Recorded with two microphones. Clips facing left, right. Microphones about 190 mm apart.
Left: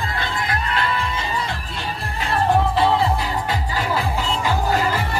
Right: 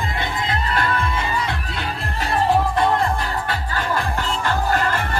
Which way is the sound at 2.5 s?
5° left (ahead or behind).